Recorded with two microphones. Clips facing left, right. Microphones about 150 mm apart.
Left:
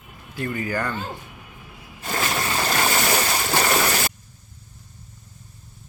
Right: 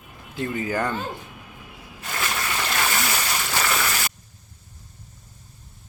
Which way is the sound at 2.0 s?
35° left (ahead or behind).